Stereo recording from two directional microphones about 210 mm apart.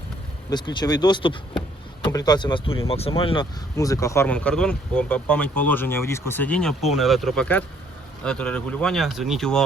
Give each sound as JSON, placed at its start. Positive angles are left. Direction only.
{"t": 0.5, "sound": "speech", "side_deg": 20}
{"t": 3.8, "sound": "speech", "side_deg": 15}